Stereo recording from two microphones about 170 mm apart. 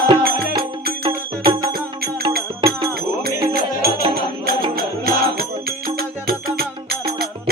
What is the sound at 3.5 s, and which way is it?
Music, 65° right (ahead or behind).